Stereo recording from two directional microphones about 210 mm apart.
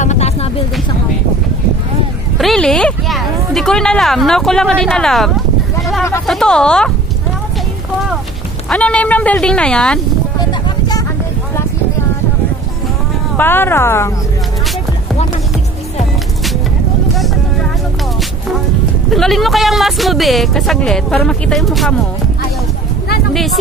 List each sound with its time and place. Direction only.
0.0 s a sound: 35° left (ahead or behind)
2.3 s speech: centre (ahead or behind)
5.8 s a sound: centre (ahead or behind)
6.2 s speech: centre (ahead or behind)
8.6 s speech: 5° left (ahead or behind)
13.4 s speech: 10° left (ahead or behind)
19.1 s speech: centre (ahead or behind)
23.3 s speech: centre (ahead or behind)